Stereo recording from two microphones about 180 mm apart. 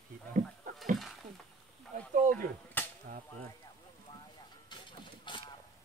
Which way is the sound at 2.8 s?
10° left (ahead or behind).